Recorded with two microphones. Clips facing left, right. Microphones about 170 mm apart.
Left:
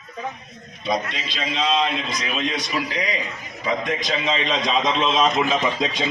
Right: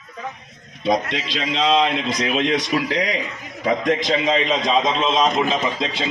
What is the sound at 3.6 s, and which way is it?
Speech, 50° right (ahead or behind).